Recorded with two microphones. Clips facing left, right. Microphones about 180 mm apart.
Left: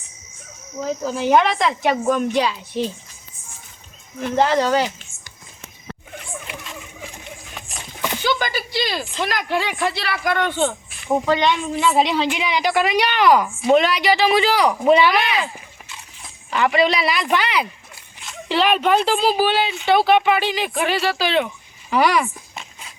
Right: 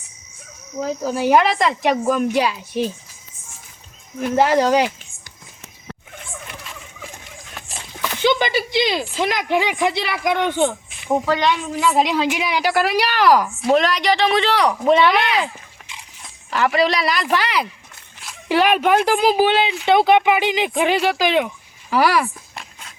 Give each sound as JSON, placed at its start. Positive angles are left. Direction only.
{"t": 1.0, "sound": "a woman's voice", "side_deg": -5}
{"t": 4.2, "sound": "speech", "side_deg": -5}
{"t": 8.2, "sound": "a woman's voice", "side_deg": -20}
{"t": 11.1, "sound": "a woman's voice", "side_deg": 0}
{"t": 16.5, "sound": "a woman's voice", "side_deg": 0}
{"t": 21.8, "sound": "a sound", "side_deg": 0}